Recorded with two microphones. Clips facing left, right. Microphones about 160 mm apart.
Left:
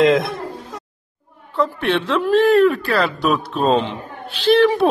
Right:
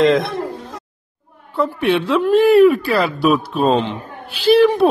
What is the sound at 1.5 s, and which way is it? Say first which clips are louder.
Speech: right 2 dB; centre (ahead or behind).